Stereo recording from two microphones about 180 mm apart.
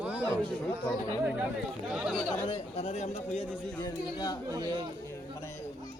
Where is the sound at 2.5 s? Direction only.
35° left (ahead or behind).